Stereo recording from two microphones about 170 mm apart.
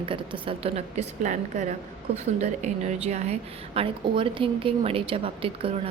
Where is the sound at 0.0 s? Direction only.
30° right (ahead or behind).